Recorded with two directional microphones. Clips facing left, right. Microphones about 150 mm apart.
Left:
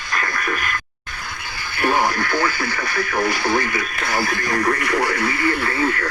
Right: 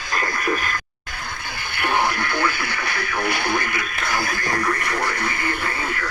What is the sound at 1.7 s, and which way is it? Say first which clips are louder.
Radio: left 3 dB; 60° right (ahead or behind).